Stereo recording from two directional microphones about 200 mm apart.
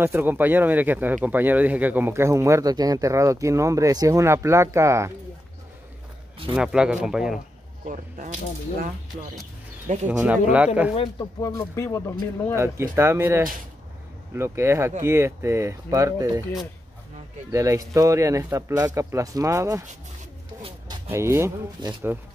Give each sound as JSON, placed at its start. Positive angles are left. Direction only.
{"t": 0.0, "sound": "speech", "side_deg": -10}
{"t": 6.5, "sound": "speech", "side_deg": -5}
{"t": 7.8, "sound": "speech", "side_deg": -40}
{"t": 10.0, "sound": "speech", "side_deg": -5}
{"t": 11.4, "sound": "speech", "side_deg": 15}
{"t": 12.5, "sound": "speech", "side_deg": -15}
{"t": 17.5, "sound": "speech", "side_deg": -15}
{"t": 21.1, "sound": "speech", "side_deg": -15}